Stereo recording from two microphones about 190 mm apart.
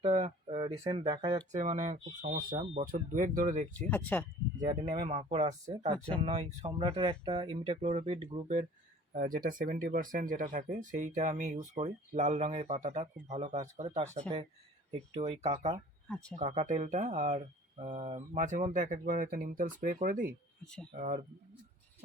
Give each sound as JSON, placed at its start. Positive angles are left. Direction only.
{"t": 0.0, "sound": "speech", "side_deg": -35}
{"t": 1.5, "sound": "speech", "side_deg": -40}
{"t": 3.8, "sound": "speech", "side_deg": 10}
{"t": 4.7, "sound": "speech", "side_deg": -35}
{"t": 9.1, "sound": "speech", "side_deg": -50}
{"t": 16.0, "sound": "speech", "side_deg": 5}
{"t": 16.3, "sound": "speech", "side_deg": -35}